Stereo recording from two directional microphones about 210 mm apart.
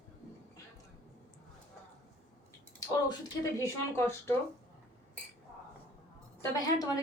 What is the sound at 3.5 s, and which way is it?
Speech, 15° left (ahead or behind).